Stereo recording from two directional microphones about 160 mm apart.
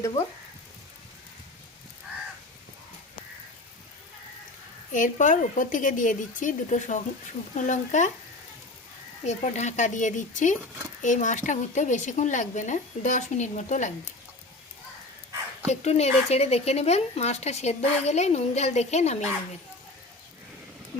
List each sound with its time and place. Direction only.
4.9 s speech: 55° left (ahead or behind)
9.2 s speech: 45° left (ahead or behind)
15.7 s speech: 40° left (ahead or behind)